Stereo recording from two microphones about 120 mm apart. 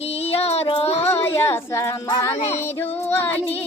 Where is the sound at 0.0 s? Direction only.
60° left (ahead or behind).